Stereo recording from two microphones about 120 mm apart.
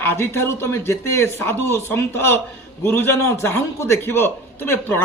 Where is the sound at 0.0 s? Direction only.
20° left (ahead or behind).